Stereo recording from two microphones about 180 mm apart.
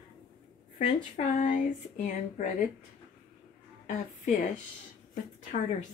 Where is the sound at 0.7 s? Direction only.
40° left (ahead or behind).